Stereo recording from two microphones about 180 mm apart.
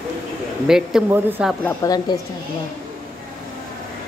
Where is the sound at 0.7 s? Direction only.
5° right (ahead or behind).